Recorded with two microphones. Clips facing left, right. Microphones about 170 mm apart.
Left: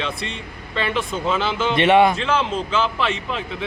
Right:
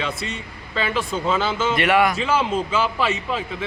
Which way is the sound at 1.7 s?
25° left (ahead or behind).